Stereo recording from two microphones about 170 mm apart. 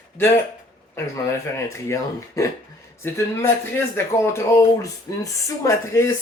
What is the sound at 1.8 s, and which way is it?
Speech, 15° left (ahead or behind).